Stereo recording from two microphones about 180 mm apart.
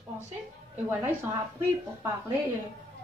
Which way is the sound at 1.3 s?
15° right (ahead or behind).